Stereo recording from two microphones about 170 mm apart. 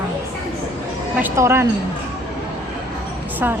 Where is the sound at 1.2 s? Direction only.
15° right (ahead or behind).